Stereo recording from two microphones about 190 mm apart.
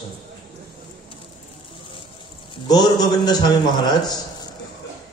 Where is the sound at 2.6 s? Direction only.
20° left (ahead or behind).